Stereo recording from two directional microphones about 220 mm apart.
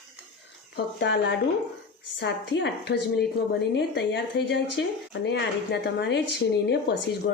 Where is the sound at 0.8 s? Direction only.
50° left (ahead or behind).